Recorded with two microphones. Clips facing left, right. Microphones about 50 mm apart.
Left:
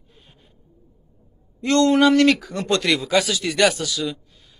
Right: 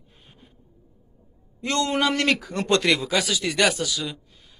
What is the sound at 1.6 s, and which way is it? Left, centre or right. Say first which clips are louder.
Speech: left 7 dB; centre.